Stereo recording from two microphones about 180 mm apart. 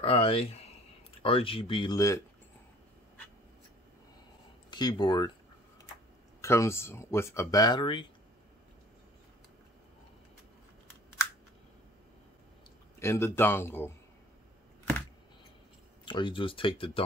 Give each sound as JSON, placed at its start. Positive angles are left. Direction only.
{"t": 0.0, "sound": "speech", "side_deg": 30}
{"t": 4.6, "sound": "speech", "side_deg": 25}
{"t": 6.4, "sound": "speech", "side_deg": 15}
{"t": 13.0, "sound": "speech", "side_deg": 15}
{"t": 16.1, "sound": "speech", "side_deg": 25}